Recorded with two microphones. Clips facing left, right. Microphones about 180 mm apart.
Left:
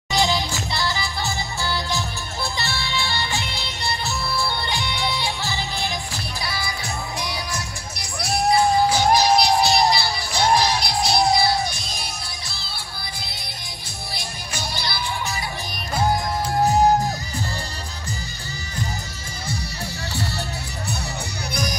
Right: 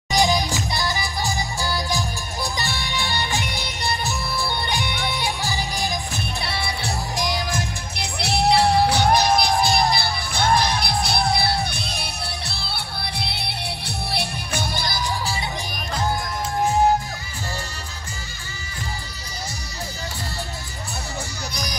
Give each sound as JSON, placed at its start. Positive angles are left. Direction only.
{"t": 0.1, "sound": "music", "side_deg": -15}
{"t": 6.4, "sound": "music", "side_deg": -30}
{"t": 8.2, "sound": "music", "side_deg": -70}
{"t": 14.1, "sound": "music", "side_deg": -55}